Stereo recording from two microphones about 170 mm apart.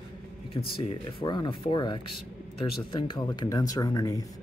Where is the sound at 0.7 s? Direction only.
25° left (ahead or behind).